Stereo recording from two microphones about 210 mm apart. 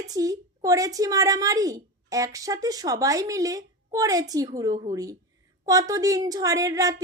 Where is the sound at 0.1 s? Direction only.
15° right (ahead or behind).